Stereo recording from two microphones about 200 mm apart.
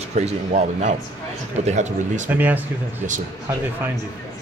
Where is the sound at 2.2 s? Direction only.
10° right (ahead or behind).